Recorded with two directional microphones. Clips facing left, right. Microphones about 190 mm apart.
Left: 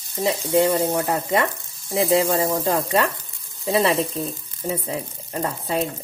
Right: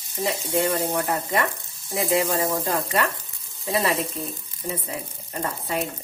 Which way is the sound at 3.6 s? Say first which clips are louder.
Left 4 dB; 25° left (ahead or behind).